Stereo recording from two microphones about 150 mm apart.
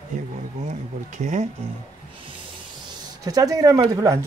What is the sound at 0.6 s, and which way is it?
Speech, 55° right (ahead or behind).